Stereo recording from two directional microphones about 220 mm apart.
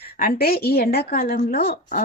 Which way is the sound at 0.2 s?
40° left (ahead or behind).